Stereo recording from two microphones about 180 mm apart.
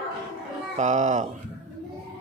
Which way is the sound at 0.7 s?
40° right (ahead or behind).